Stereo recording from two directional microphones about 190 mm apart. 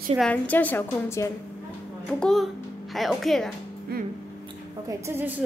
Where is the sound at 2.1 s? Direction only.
5° left (ahead or behind).